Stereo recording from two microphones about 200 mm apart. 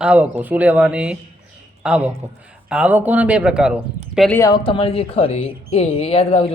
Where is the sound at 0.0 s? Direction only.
5° right (ahead or behind).